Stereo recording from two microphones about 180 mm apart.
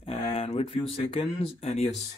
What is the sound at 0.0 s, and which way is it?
Speech, 35° left (ahead or behind).